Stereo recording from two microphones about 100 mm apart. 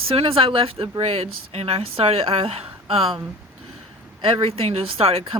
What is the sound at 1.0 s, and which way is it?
A woman's voice, 80° right.